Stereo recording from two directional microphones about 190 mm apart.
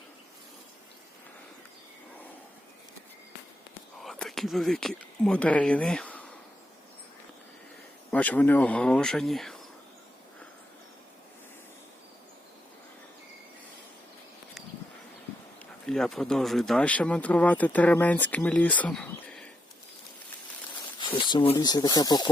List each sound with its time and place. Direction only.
4.0 s speech: centre (ahead or behind)
8.1 s speech: 10° left (ahead or behind)
15.9 s speech: centre (ahead or behind)
21.2 s speech: 25° left (ahead or behind)